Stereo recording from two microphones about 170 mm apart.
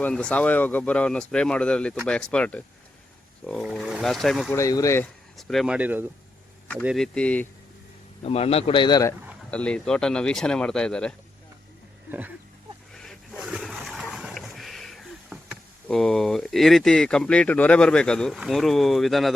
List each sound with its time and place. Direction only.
0.0 s speech: 5° left (ahead or behind)
4.5 s speech: 20° left (ahead or behind)
5.4 s speech: centre (ahead or behind)
6.8 s speech: centre (ahead or behind)
8.2 s a man's voice: 35° left (ahead or behind)
9.5 s speech: 5° left (ahead or behind)
12.9 s a sound: 5° left (ahead or behind)
15.9 s speech: 5° left (ahead or behind)